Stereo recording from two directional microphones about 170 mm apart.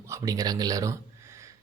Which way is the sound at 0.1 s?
20° right (ahead or behind).